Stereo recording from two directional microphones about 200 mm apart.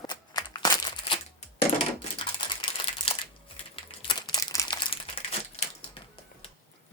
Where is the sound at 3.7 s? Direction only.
25° left (ahead or behind).